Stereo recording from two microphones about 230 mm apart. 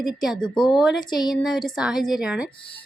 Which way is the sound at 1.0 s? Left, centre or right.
Centre.